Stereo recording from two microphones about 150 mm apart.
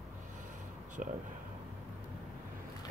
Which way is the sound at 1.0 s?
60° right (ahead or behind).